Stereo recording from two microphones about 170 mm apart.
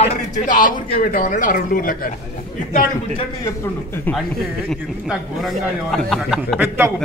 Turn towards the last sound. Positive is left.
turn(degrees=-15)  # may be behind; listen again after turning